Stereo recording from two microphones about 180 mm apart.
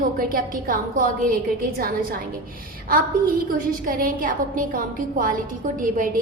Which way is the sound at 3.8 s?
50° right (ahead or behind).